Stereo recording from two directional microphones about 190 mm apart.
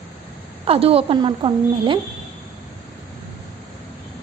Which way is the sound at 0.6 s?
30° right (ahead or behind).